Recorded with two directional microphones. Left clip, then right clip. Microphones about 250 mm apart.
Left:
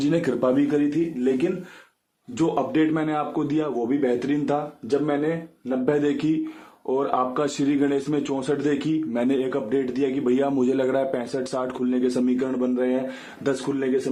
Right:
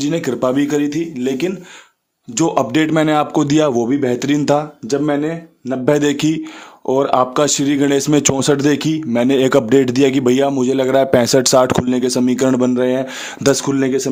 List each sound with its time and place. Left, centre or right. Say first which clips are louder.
0.0 s a man's voice: right 5 dB; right